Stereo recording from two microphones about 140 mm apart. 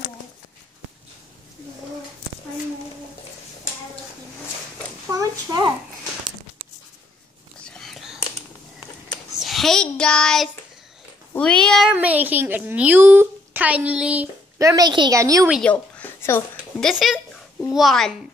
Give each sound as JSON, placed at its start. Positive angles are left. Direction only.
{"t": 5.1, "sound": "a sound", "side_deg": -25}
{"t": 7.6, "sound": "whispering", "side_deg": 5}
{"t": 9.4, "sound": "child singing", "side_deg": 0}
{"t": 11.3, "sound": "speech", "side_deg": 5}
{"t": 11.9, "sound": "a woman's voice", "side_deg": -10}
{"t": 14.6, "sound": "a woman's voice", "side_deg": -25}
{"t": 15.6, "sound": "a sound", "side_deg": 10}
{"t": 16.8, "sound": "speech", "side_deg": -5}